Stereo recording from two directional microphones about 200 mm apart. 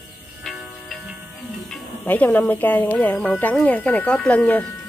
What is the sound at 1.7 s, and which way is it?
Speech, 10° left (ahead or behind).